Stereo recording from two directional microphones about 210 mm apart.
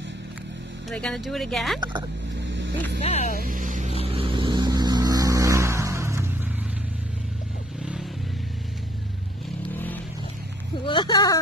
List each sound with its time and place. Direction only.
0.8 s speech: centre (ahead or behind)
1.8 s speech: 20° right (ahead or behind)
3.0 s speech: 30° left (ahead or behind)
3.3 s vehicle: 40° right (ahead or behind)
4.0 s vehicle: 25° right (ahead or behind)
7.8 s vehicle: 5° right (ahead or behind)
10.9 s a sound: 20° left (ahead or behind)